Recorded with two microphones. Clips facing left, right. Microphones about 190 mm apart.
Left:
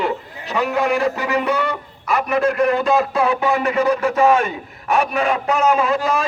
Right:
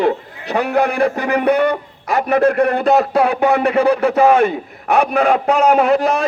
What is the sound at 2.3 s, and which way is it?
A man's voice, 60° right (ahead or behind).